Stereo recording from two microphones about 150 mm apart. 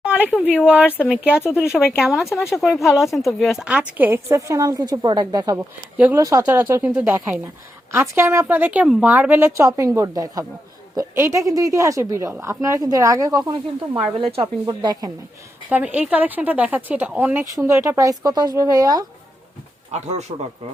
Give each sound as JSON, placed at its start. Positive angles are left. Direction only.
{"t": 0.0, "sound": "speech", "side_deg": -10}
{"t": 0.8, "sound": "speech", "side_deg": 10}
{"t": 1.1, "sound": "a woman's voice", "side_deg": -5}
{"t": 5.5, "sound": "speech", "side_deg": -10}
{"t": 6.1, "sound": "a woman's voice", "side_deg": -20}
{"t": 14.7, "sound": "a woman's voice", "side_deg": -30}
{"t": 15.7, "sound": "speech", "side_deg": -10}
{"t": 19.9, "sound": "speech", "side_deg": -45}